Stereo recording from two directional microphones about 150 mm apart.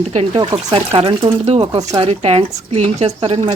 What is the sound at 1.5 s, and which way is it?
Speech, 25° right (ahead or behind).